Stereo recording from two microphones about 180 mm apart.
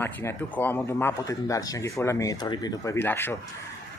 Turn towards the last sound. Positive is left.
turn(degrees=10)  # may be behind; listen again after turning